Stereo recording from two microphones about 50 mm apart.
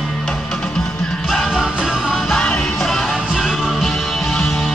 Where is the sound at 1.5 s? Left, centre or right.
Centre.